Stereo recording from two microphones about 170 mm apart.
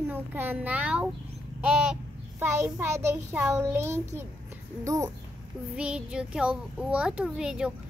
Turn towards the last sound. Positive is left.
turn(degrees=-5)  # may be behind; listen again after turning